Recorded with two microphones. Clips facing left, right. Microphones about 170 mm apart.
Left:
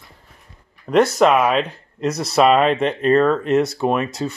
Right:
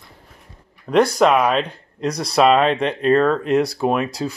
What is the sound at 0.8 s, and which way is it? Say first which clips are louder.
Speech: left 1 dB; 5° left (ahead or behind).